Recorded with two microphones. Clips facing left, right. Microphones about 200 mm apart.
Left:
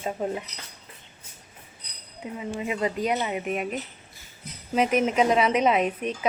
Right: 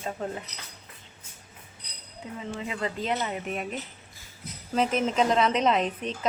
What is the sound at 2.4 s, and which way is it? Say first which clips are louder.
A woman's voice: left 4 dB; 15° left (ahead or behind).